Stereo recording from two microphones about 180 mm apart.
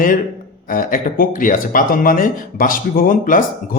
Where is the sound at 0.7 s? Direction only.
50° left (ahead or behind).